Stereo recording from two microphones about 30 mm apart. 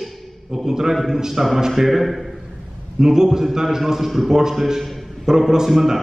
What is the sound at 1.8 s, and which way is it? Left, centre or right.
Speech, centre.